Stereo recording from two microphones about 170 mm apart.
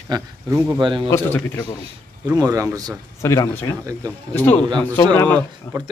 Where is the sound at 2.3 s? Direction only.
20° right (ahead or behind).